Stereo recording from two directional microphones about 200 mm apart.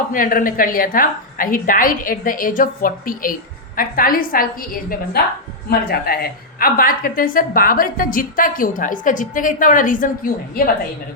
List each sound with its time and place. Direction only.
0.1 s a woman's voice: 45° left (ahead or behind)